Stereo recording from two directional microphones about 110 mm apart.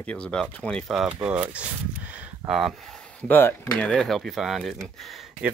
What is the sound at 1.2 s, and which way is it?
Speech, 10° right (ahead or behind).